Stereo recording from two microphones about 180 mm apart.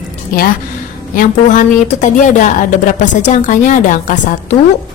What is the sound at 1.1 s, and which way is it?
Speech, 45° left (ahead or behind).